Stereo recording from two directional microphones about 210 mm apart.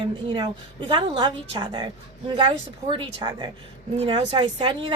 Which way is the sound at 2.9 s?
20° right (ahead or behind).